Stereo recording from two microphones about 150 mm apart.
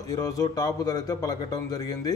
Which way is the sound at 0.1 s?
25° left (ahead or behind).